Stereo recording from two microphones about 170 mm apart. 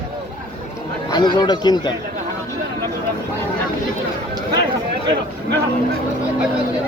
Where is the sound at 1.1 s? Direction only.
25° left (ahead or behind).